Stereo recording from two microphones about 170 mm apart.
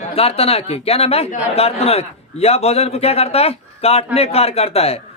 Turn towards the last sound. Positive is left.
turn(degrees=35)  # may be behind; listen again after turning